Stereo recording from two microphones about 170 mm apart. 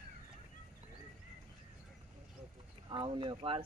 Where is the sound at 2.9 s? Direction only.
30° right (ahead or behind).